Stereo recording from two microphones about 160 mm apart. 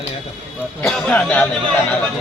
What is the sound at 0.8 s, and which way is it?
Speech, 5° left (ahead or behind).